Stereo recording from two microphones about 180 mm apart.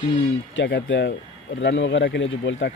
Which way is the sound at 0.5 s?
90° left.